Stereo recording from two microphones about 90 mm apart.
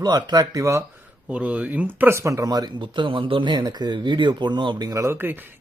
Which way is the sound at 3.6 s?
50° right (ahead or behind).